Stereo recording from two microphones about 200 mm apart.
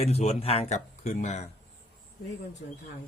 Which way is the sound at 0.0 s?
30° left (ahead or behind).